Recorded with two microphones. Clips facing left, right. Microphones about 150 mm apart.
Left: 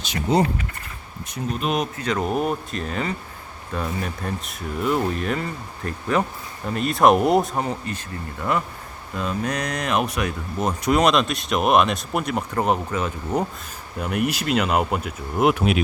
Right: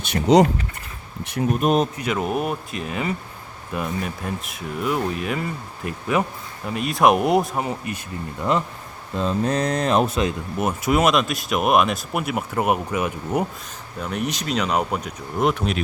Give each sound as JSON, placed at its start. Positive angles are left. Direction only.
{"t": 0.0, "sound": "speech", "side_deg": -75}
{"t": 1.3, "sound": "speech", "side_deg": -60}
{"t": 2.0, "sound": "speech", "side_deg": -5}
{"t": 10.6, "sound": "speech", "side_deg": -5}
{"t": 14.0, "sound": "speech", "side_deg": 5}